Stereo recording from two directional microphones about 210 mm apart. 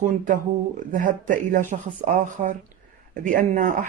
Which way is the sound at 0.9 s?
40° right (ahead or behind).